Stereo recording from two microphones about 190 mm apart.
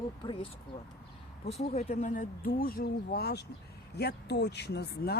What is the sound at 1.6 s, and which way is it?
Speech, 35° left (ahead or behind).